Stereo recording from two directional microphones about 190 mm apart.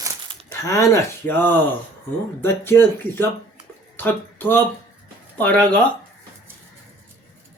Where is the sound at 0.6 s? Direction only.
15° left (ahead or behind).